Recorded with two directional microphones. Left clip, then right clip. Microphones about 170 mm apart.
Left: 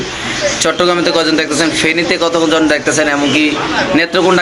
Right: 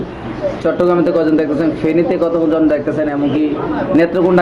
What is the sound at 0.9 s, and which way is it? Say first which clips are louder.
A man's voice: left 1 dB; centre (ahead or behind).